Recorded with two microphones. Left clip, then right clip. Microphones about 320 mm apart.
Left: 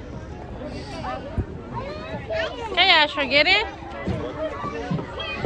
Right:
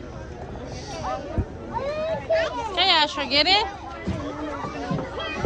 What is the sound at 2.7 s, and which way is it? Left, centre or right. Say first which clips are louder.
Speech: left 3 dB; centre.